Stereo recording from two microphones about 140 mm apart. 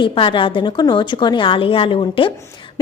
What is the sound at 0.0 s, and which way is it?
A woman's voice, 40° left (ahead or behind).